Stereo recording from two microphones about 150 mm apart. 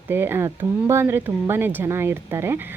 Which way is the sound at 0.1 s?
15° right (ahead or behind).